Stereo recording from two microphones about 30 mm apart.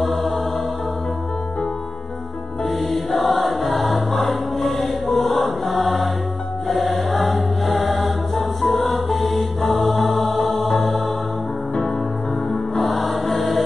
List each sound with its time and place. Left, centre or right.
2.6 s music: centre
6.7 s choir: centre
12.4 s music: centre